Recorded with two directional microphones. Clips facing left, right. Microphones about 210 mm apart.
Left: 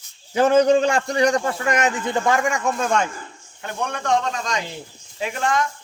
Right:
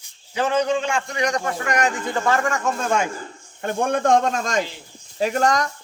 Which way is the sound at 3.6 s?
50° right (ahead or behind).